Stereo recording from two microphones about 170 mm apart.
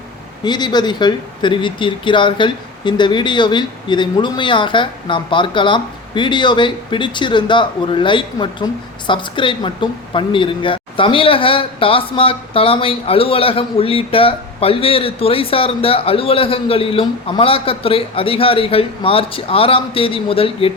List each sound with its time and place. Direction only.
0.4 s speech: 25° left (ahead or behind)